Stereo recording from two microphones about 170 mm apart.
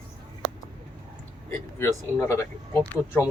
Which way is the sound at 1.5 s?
15° left (ahead or behind).